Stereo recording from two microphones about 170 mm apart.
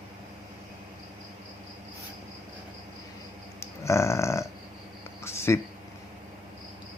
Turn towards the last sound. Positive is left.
turn(degrees=15)  # may be behind; listen again after turning